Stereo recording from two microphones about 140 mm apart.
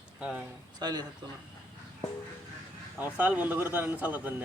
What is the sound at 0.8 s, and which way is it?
Speech, 30° right (ahead or behind).